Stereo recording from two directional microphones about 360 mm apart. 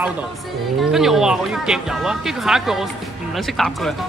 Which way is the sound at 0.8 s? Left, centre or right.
Centre.